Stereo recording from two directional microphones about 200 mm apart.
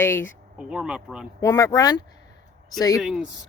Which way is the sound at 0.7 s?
5° right (ahead or behind).